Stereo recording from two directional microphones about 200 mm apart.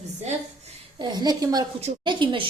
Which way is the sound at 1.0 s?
20° right (ahead or behind).